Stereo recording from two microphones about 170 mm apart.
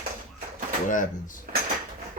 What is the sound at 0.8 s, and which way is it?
Speech, 50° left (ahead or behind).